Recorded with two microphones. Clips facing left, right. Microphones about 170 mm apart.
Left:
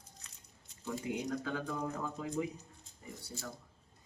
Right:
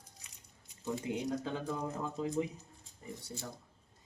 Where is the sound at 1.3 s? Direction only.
25° right (ahead or behind).